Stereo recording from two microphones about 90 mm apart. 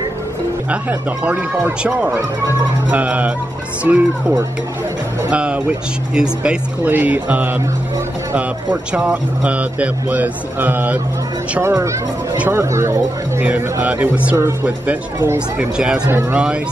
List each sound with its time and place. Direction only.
0.7 s speech: 15° right (ahead or behind)
8.9 s speech: 10° right (ahead or behind)
11.6 s speech: 35° right (ahead or behind)
13.4 s speech: 20° right (ahead or behind)
14.3 s speech: 30° right (ahead or behind)
15.5 s speech: 10° right (ahead or behind)